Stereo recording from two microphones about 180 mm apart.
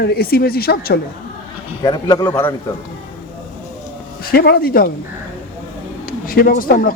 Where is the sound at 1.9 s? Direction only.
20° left (ahead or behind).